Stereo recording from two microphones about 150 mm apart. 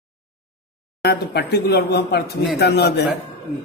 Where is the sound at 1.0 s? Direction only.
90° left.